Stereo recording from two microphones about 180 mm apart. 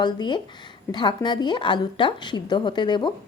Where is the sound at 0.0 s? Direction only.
25° left (ahead or behind).